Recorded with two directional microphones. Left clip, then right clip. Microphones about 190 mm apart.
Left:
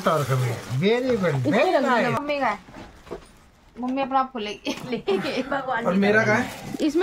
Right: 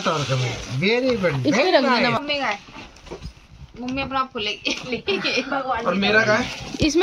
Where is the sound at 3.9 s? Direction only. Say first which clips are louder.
Left 1 dB; 80° left.